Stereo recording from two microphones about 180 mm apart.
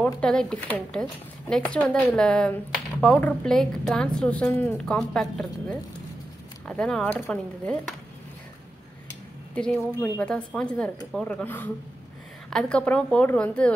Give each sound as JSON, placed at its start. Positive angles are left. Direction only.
{"t": 0.0, "sound": "a woman's voice", "side_deg": 5}
{"t": 9.6, "sound": "a woman's voice", "side_deg": 10}